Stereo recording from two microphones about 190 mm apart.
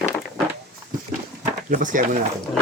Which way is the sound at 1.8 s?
45° right (ahead or behind).